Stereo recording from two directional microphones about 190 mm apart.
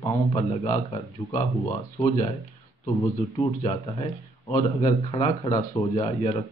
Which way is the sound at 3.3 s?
20° left (ahead or behind).